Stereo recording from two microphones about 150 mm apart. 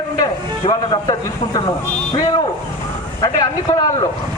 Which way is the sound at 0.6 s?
30° left (ahead or behind).